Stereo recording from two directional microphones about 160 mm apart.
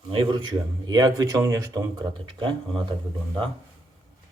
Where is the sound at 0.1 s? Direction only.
30° right (ahead or behind).